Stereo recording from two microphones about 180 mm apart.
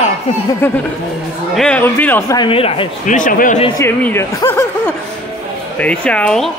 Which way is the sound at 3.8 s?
10° left (ahead or behind).